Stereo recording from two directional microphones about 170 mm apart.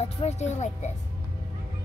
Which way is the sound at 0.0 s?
40° left (ahead or behind).